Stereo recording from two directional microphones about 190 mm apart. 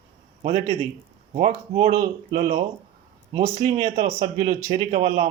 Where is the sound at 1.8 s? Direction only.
40° right (ahead or behind).